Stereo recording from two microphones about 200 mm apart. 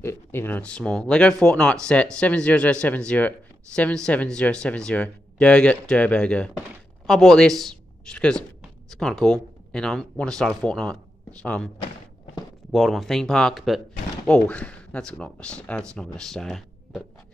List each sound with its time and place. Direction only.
0.0 s speech: 10° left (ahead or behind)
12.7 s speech: centre (ahead or behind)